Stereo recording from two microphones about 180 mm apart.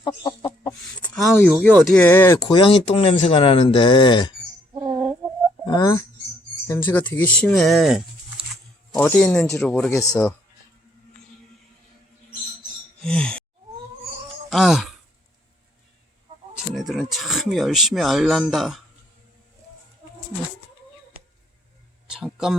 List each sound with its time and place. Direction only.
0.0 s chicken: 25° left (ahead or behind)
0.7 s a sound: 5° left (ahead or behind)
1.9 s speech: 10° left (ahead or behind)
2.5 s speech: 25° left (ahead or behind)
4.7 s a sound: 25° right (ahead or behind)
5.6 s speech: 25° left (ahead or behind)
6.7 s speech: 10° left (ahead or behind)
9.9 s speech: 20° left (ahead or behind)
13.1 s sigh: 5° left (ahead or behind)
14.5 s speech: centre (ahead or behind)
16.7 s speech: centre (ahead or behind)
22.1 s a sound: 5° right (ahead or behind)